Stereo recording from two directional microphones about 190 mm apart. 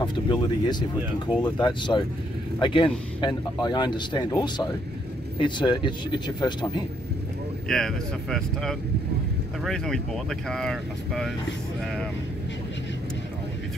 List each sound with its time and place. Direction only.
0.0 s speech: 25° left (ahead or behind)
7.6 s speech: 5° left (ahead or behind)